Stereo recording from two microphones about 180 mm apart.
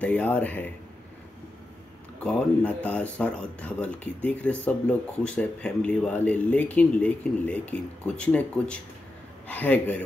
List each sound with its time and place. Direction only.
0.0 s speech: 10° left (ahead or behind)
2.2 s speech: 5° left (ahead or behind)